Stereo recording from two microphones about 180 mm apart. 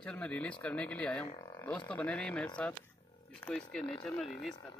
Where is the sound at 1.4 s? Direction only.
20° left (ahead or behind).